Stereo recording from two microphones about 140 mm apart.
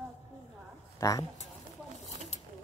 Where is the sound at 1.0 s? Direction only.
25° left (ahead or behind).